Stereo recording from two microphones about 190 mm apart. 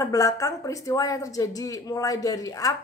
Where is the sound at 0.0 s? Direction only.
15° left (ahead or behind).